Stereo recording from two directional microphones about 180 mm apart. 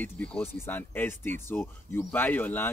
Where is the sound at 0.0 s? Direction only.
10° left (ahead or behind).